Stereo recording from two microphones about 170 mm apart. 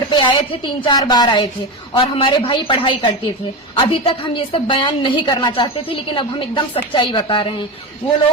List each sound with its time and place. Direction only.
0.1 s a woman's voice: 30° left (ahead or behind)